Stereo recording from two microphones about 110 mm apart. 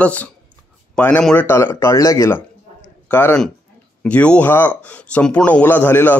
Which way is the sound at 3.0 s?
15° left (ahead or behind).